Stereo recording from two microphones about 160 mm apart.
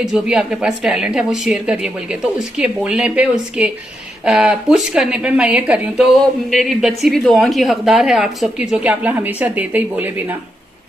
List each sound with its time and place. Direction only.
0.0 s a woman's voice: 5° right (ahead or behind)